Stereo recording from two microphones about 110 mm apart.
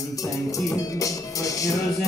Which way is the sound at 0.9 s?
30° left (ahead or behind).